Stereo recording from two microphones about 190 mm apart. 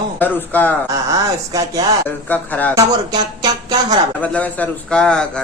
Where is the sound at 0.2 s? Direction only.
10° left (ahead or behind).